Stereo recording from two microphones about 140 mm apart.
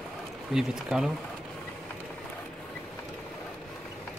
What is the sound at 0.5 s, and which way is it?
Speech, 5° right (ahead or behind).